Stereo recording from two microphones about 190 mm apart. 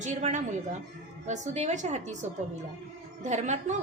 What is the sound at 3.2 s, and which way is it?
Speech, 40° right (ahead or behind).